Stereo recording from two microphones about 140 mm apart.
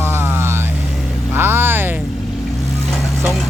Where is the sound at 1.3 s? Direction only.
15° right (ahead or behind).